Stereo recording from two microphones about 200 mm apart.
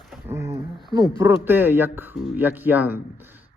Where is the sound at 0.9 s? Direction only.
15° right (ahead or behind).